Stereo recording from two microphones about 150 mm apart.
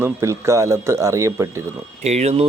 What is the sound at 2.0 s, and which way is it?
Speech, 45° right (ahead or behind).